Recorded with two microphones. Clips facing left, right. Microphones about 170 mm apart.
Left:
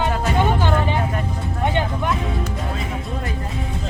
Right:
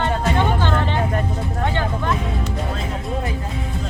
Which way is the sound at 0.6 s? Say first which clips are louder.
Left 1 dB; 10° left (ahead or behind).